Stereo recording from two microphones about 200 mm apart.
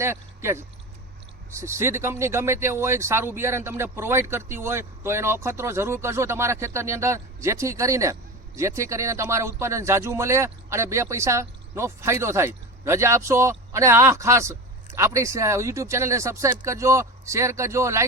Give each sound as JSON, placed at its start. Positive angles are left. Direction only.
{"t": 0.0, "sound": "speech", "side_deg": -15}